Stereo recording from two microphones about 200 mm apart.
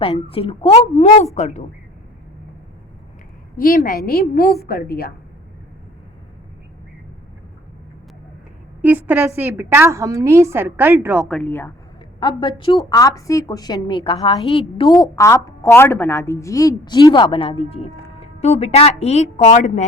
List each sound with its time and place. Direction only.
0.0 s a woman's voice: 30° left (ahead or behind)
3.6 s a woman's voice: 45° left (ahead or behind)
8.8 s a woman's voice: 10° right (ahead or behind)
11.3 s speech: 5° left (ahead or behind)
12.2 s a woman's voice: 25° left (ahead or behind)
15.0 s a woman's voice: 15° left (ahead or behind); by 19.8 s 35° left (ahead or behind)